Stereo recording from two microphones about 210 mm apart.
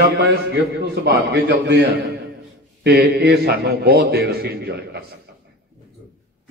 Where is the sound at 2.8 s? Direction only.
50° right (ahead or behind).